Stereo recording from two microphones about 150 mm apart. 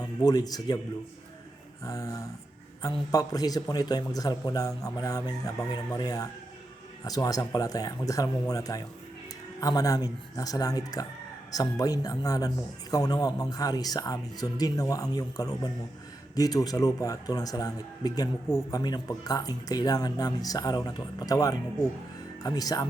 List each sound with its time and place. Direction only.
0.0 s speech: 25° left (ahead or behind)
1.8 s speech: 20° left (ahead or behind)